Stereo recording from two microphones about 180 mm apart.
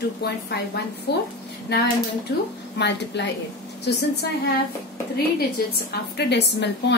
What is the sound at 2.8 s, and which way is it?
Speech, 70° left (ahead or behind).